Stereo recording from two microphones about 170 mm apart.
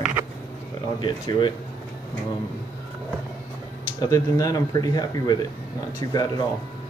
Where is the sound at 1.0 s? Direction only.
25° left (ahead or behind).